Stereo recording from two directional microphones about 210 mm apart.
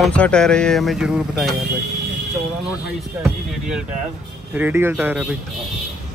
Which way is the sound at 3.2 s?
5° right (ahead or behind).